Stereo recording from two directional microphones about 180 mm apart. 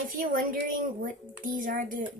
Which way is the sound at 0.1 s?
50° right (ahead or behind).